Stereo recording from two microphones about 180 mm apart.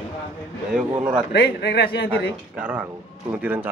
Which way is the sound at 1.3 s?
65° left (ahead or behind).